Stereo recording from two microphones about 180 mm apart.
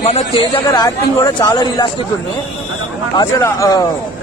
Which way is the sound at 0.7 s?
20° left (ahead or behind).